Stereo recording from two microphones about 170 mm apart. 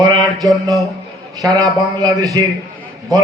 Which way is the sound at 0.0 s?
20° right (ahead or behind).